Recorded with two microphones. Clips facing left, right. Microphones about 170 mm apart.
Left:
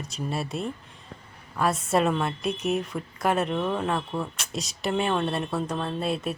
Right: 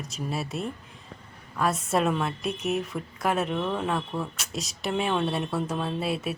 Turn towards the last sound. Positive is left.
turn(degrees=-5)  # may be behind; listen again after turning